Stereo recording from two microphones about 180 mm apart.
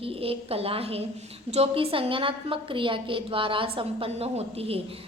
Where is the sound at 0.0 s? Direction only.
30° right (ahead or behind).